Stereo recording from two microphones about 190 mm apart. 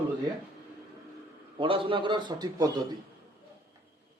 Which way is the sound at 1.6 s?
30° right (ahead or behind).